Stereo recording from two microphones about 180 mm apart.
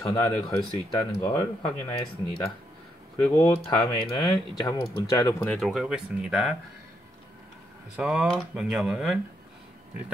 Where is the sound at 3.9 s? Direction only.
25° left (ahead or behind); by 6.5 s 5° right (ahead or behind).